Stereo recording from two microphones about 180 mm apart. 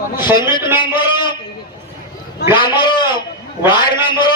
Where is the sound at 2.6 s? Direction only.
25° left (ahead or behind).